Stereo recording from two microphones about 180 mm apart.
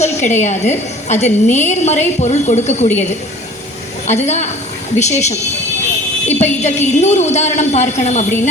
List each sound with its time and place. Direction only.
0.0 s a sound: 40° left (ahead or behind)
0.4 s a woman's voice: 40° left (ahead or behind)
4.0 s a woman's voice: 40° left (ahead or behind)